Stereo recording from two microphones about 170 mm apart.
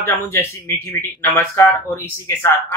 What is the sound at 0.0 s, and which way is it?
Speech, 15° left (ahead or behind).